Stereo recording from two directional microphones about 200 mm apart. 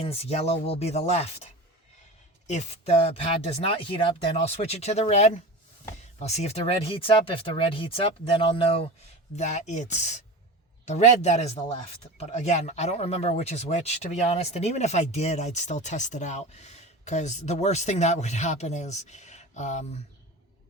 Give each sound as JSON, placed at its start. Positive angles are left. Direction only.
{"t": 0.0, "sound": "a man's voice", "side_deg": 30}
{"t": 2.5, "sound": "a man's voice", "side_deg": 35}